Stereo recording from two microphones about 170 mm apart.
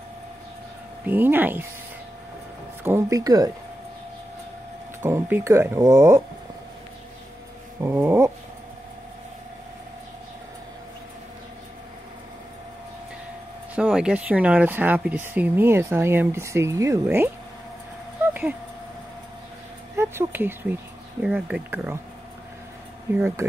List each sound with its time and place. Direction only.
1.0 s speech: 10° right (ahead or behind)
2.8 s speech: 15° right (ahead or behind)
5.0 s speech: 15° right (ahead or behind)
7.8 s speech: 15° right (ahead or behind)
13.7 s speech: 5° right (ahead or behind)
20.0 s speech: 15° right (ahead or behind)
23.1 s speech: 15° right (ahead or behind)